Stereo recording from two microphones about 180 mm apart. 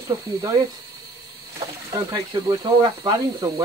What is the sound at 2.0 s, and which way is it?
Speech, 20° right (ahead or behind).